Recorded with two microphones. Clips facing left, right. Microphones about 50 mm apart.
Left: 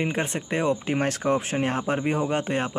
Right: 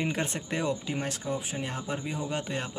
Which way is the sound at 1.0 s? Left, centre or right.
Left.